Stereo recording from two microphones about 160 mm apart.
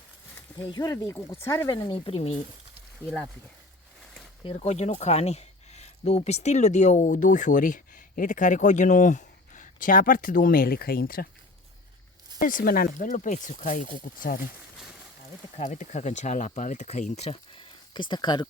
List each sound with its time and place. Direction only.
0.7 s speech: 20° left (ahead or behind)
1.7 s speech: 30° left (ahead or behind)
4.4 s speech: 40° left (ahead or behind); by 11.3 s 70° left (ahead or behind)
12.4 s speech: 60° left (ahead or behind)
15.5 s speech: 45° left (ahead or behind); by 18.4 s 30° left (ahead or behind)